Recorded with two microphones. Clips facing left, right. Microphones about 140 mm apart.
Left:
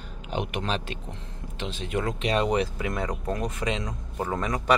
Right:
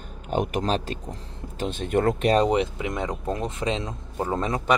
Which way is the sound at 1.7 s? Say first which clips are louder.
Right 7 dB; 55° right (ahead or behind).